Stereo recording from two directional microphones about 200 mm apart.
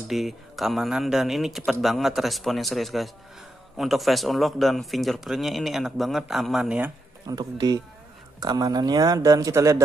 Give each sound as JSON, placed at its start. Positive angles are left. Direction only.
{"t": 0.1, "sound": "speech", "side_deg": 0}
{"t": 7.2, "sound": "speech", "side_deg": -20}